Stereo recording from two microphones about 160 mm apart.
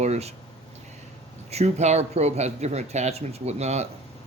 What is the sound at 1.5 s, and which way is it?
Speech, 40° right (ahead or behind).